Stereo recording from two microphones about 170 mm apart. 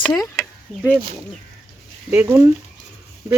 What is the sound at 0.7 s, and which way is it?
Speech, centre (ahead or behind).